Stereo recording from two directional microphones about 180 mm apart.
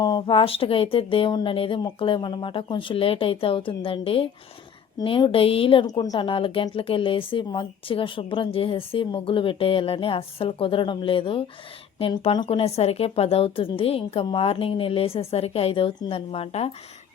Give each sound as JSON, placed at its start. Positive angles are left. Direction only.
{"t": 0.0, "sound": "a woman's voice", "side_deg": 25}